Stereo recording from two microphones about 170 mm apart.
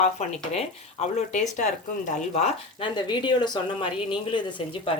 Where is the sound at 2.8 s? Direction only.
25° left (ahead or behind).